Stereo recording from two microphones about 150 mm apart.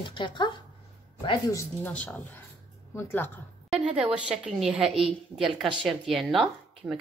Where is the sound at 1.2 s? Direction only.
25° left (ahead or behind).